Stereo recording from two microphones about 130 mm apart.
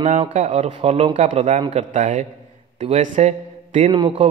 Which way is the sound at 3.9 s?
40° right (ahead or behind).